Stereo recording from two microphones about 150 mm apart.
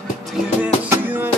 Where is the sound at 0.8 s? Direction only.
15° right (ahead or behind).